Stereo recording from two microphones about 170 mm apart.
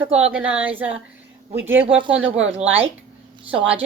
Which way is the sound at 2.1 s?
5° right (ahead or behind).